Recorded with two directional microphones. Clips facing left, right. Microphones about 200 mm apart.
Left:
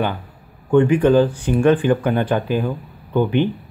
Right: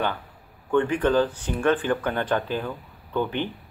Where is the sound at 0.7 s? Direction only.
15° left (ahead or behind).